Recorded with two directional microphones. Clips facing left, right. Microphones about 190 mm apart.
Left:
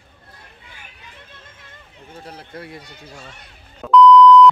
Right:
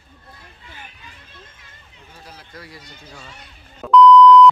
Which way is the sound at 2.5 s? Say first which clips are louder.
Left 5 dB; 30° left (ahead or behind).